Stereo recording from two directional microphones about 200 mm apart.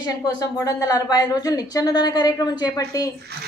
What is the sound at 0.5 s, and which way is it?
A woman's voice, 15° left (ahead or behind).